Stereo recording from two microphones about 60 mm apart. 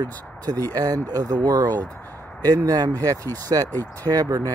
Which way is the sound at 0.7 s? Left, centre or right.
Right.